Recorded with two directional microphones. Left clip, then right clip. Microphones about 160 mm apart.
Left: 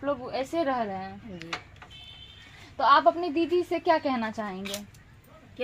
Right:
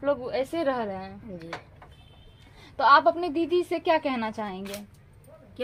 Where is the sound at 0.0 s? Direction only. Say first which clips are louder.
Right 3 dB; 20° left (ahead or behind).